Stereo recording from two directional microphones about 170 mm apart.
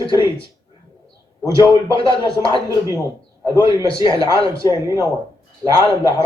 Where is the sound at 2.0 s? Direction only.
20° right (ahead or behind).